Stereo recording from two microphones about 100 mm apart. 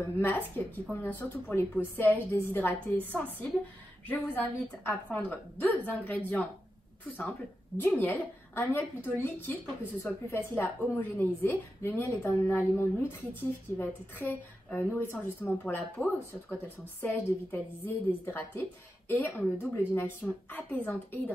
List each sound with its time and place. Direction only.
0.0 s a woman's voice: 20° left (ahead or behind)